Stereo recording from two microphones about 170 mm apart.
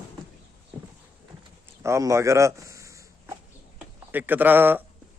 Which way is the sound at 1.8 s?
15° right (ahead or behind).